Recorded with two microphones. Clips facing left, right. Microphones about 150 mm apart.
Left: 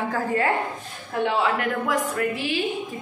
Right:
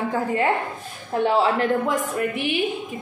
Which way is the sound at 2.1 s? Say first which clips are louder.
Right 1 dB; 20° right (ahead or behind).